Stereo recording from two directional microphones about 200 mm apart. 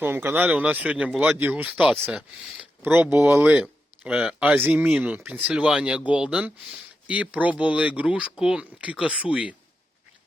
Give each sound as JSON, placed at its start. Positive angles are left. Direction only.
{"t": 0.0, "sound": "speech", "side_deg": -10}